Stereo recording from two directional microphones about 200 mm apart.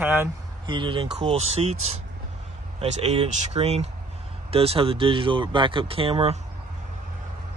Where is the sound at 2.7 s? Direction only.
35° right (ahead or behind).